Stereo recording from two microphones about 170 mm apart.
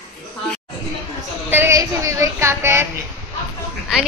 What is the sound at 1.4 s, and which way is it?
A woman's voice, 15° right (ahead or behind).